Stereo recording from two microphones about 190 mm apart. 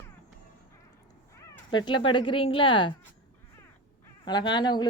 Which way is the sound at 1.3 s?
15° left (ahead or behind).